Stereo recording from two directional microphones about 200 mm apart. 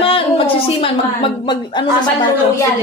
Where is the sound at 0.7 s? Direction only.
30° left (ahead or behind).